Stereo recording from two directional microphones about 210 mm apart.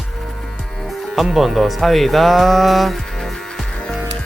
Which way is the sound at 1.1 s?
Centre (ahead or behind).